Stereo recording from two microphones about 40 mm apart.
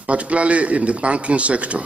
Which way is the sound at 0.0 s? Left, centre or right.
Right.